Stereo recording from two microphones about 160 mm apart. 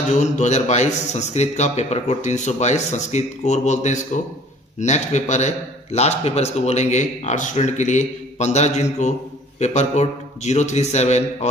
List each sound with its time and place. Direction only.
0.1 s a man's voice: 45° left (ahead or behind)